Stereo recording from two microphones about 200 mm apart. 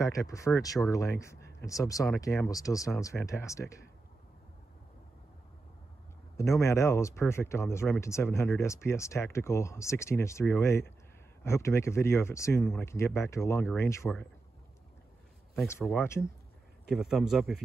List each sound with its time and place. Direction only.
0.1 s speech: 15° left (ahead or behind)
6.3 s speech: 15° left (ahead or behind)
15.5 s a man's voice: centre (ahead or behind)